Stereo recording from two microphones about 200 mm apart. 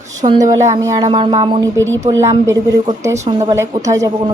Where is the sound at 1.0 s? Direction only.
25° right (ahead or behind).